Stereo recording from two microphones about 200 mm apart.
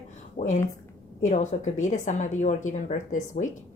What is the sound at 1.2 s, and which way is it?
A woman's voice, 35° left (ahead or behind).